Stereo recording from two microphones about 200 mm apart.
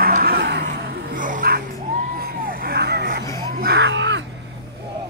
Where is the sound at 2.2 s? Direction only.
50° right (ahead or behind).